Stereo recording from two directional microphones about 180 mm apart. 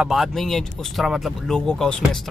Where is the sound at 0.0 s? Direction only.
Centre (ahead or behind).